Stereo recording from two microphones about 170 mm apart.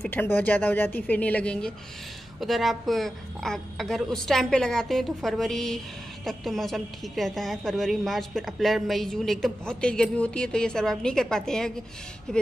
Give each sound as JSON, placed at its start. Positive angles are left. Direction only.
{"t": 0.1, "sound": "a woman's voice", "side_deg": 10}